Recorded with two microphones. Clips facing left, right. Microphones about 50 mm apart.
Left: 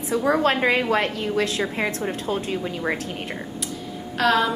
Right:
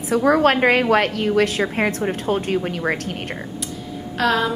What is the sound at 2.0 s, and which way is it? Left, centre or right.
Speech, centre.